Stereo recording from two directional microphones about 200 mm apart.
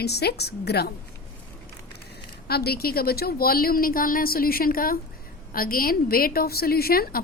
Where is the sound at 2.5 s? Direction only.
50° left (ahead or behind).